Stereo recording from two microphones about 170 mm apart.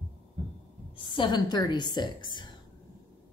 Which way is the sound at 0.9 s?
30° left (ahead or behind).